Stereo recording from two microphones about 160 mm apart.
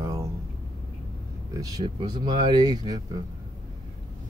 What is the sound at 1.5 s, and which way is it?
Speech, 25° right (ahead or behind).